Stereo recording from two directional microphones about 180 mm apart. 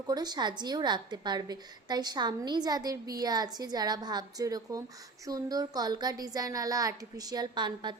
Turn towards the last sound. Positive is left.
turn(degrees=-25)  # may be behind; listen again after turning